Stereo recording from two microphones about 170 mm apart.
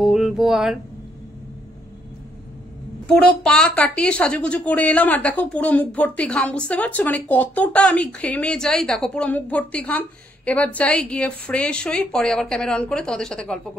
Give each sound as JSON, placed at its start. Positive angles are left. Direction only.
{"t": 0.0, "sound": "music", "side_deg": 0}
{"t": 3.3, "sound": "a woman's voice", "side_deg": 5}